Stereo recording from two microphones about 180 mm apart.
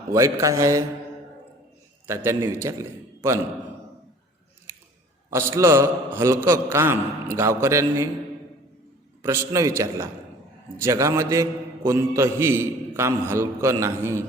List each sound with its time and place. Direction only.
0.1 s a man's voice: 20° right (ahead or behind)
2.0 s a man's voice: 15° right (ahead or behind)
5.3 s a man's voice: 15° right (ahead or behind)
9.2 s a man's voice: 15° right (ahead or behind)